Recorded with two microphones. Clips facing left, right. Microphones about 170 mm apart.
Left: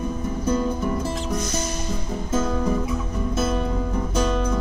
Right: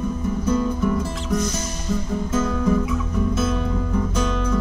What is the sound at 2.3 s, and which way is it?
Music, 30° left (ahead or behind).